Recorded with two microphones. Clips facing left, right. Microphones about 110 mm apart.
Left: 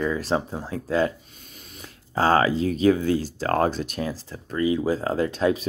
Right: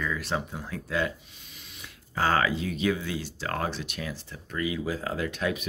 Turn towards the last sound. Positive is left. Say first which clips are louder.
# left 7 dB
turn(degrees=30)  # may be behind; listen again after turning